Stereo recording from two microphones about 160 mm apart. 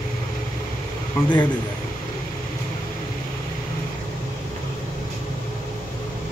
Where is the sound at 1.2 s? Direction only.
15° left (ahead or behind).